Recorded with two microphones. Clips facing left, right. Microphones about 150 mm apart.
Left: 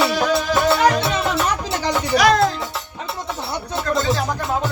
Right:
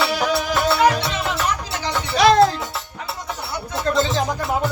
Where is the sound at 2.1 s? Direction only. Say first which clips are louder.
Right 1 dB; 30° right (ahead or behind).